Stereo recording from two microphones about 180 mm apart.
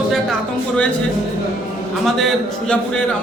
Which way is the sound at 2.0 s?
Centre (ahead or behind).